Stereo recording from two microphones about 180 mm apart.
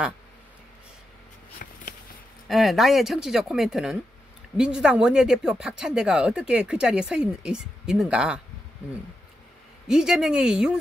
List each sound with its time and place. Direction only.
1.6 s a sound: 50° left (ahead or behind)
2.4 s speech: centre (ahead or behind)
9.8 s speech: 5° right (ahead or behind)